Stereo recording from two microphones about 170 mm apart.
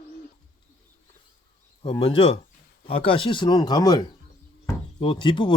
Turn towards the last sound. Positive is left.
turn(degrees=30)  # may be behind; listen again after turning